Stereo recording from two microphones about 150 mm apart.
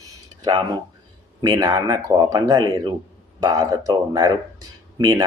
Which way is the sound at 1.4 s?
25° right (ahead or behind).